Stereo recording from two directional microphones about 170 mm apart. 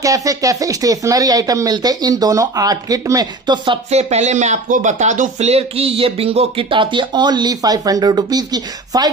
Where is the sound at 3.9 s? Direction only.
40° right (ahead or behind); by 9.1 s 25° right (ahead or behind).